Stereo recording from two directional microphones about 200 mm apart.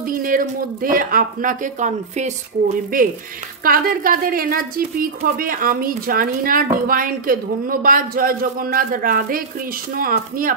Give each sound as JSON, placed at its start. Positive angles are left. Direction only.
{"t": 0.0, "sound": "a woman's voice", "side_deg": -45}